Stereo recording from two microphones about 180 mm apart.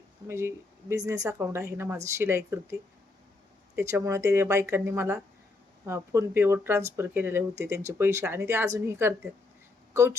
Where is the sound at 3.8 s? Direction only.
15° right (ahead or behind).